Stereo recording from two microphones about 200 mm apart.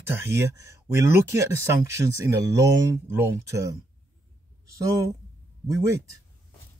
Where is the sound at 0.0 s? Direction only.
10° right (ahead or behind).